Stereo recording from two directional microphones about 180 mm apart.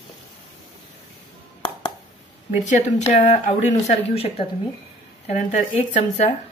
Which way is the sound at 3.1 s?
40° left (ahead or behind).